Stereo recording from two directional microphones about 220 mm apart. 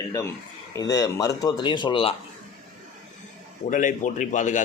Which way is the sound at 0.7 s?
15° left (ahead or behind).